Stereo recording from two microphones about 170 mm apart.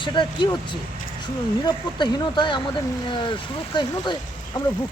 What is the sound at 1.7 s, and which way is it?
Speech, 25° left (ahead or behind).